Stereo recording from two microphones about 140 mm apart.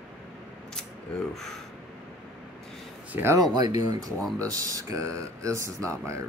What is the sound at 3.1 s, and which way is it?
Speech, 15° right (ahead or behind).